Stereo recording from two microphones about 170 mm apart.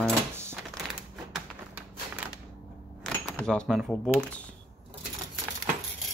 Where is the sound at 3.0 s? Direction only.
5° left (ahead or behind).